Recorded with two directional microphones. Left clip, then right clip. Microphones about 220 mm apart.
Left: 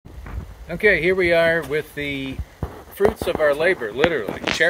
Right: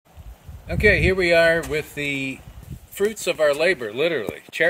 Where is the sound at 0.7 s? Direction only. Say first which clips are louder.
Left 1 dB; 20° right (ahead or behind).